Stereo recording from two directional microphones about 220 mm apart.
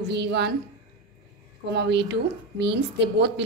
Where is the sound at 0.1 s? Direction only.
50° right (ahead or behind).